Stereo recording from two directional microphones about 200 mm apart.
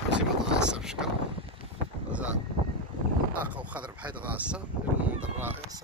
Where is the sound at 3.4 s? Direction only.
5° right (ahead or behind).